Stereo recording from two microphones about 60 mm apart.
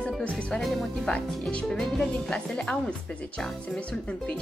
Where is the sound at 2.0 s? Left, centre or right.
Centre.